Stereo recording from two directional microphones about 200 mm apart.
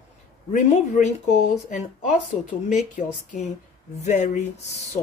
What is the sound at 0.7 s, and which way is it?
Speech, 35° left (ahead or behind).